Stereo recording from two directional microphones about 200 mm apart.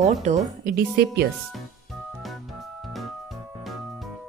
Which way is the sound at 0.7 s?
50° right (ahead or behind).